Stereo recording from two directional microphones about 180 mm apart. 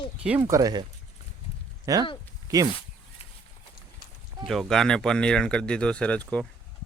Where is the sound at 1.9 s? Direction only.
20° right (ahead or behind).